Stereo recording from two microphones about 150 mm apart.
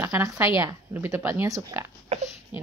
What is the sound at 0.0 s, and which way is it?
A woman's voice, 20° right (ahead or behind).